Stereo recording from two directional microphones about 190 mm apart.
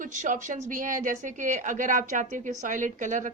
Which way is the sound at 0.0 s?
40° right (ahead or behind).